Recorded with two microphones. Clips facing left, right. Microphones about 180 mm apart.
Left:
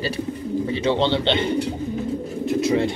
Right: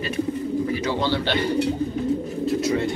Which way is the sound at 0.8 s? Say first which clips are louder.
Left 4 dB; 25° left (ahead or behind).